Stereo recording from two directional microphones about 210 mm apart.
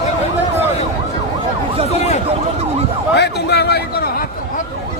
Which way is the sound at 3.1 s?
50° left (ahead or behind).